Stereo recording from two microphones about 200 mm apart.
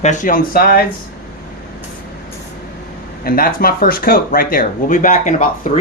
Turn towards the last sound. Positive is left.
turn(degrees=40)  # may be behind; listen again after turning